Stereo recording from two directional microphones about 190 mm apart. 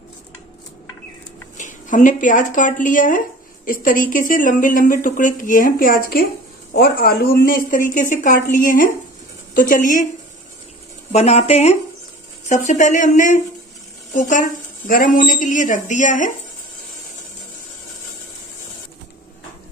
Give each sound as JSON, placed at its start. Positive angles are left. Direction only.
{"t": 1.6, "sound": "a woman's voice", "side_deg": 40}
{"t": 11.1, "sound": "speech", "side_deg": 35}